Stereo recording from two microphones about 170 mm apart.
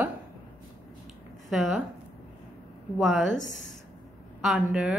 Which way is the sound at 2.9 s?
Centre (ahead or behind).